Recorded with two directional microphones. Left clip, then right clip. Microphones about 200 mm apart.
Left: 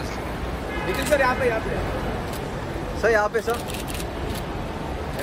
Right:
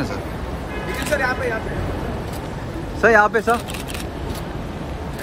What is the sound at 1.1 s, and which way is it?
Speech, 45° left (ahead or behind).